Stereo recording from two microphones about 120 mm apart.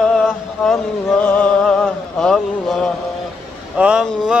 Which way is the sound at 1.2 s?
10° left (ahead or behind).